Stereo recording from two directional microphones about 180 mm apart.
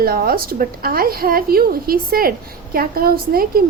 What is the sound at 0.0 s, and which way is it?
A woman's voice, 55° right (ahead or behind).